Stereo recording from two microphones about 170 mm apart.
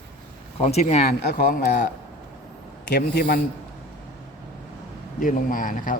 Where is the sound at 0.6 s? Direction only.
40° left (ahead or behind).